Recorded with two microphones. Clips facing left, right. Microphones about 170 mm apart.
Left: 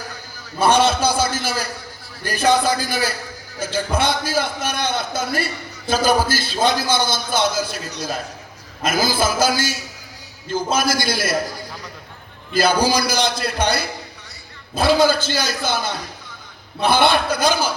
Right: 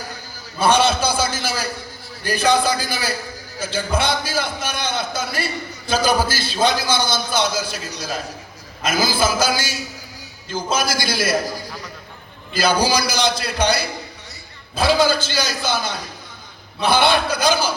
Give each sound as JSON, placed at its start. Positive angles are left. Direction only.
{"t": 0.6, "sound": "a man's voice", "side_deg": 50}
{"t": 8.8, "sound": "a man's voice", "side_deg": 50}
{"t": 12.5, "sound": "a man's voice", "side_deg": 50}